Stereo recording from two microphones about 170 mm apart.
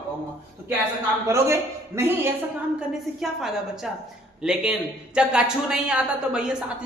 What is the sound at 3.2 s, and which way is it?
A woman's voice, centre (ahead or behind).